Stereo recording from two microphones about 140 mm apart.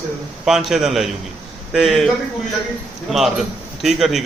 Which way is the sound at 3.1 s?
Centre (ahead or behind).